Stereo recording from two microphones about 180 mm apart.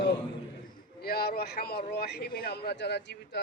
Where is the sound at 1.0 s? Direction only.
60° left (ahead or behind).